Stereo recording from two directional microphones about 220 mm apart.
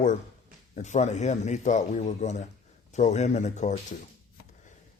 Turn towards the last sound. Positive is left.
turn(degrees=30)  # may be behind; listen again after turning